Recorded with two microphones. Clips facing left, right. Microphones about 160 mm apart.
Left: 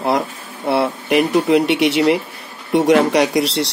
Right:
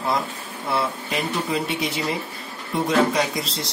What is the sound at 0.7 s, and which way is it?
Speech, 70° left (ahead or behind).